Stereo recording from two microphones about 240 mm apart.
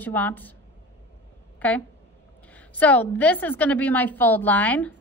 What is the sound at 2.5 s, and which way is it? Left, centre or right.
A woman's voice, centre.